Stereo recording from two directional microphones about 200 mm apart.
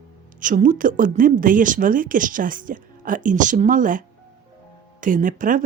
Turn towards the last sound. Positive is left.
turn(degrees=-40)  # may be behind; listen again after turning